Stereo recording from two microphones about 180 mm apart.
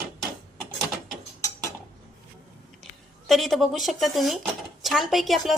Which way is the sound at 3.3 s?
Centre (ahead or behind).